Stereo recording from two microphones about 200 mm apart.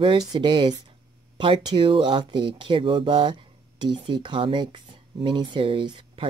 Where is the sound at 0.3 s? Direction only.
25° right (ahead or behind).